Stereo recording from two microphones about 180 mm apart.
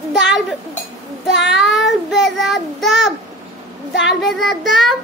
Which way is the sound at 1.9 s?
Centre (ahead or behind).